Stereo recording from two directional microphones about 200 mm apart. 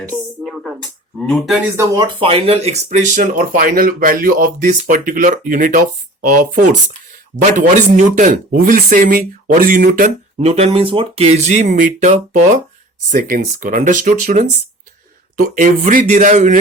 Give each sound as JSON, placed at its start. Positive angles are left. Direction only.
{"t": 0.4, "sound": "speech", "side_deg": 0}
{"t": 1.7, "sound": "speech", "side_deg": -15}